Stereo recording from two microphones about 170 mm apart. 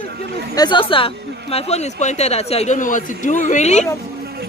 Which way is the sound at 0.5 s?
25° left (ahead or behind).